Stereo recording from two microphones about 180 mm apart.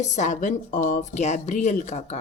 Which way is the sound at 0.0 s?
40° left (ahead or behind).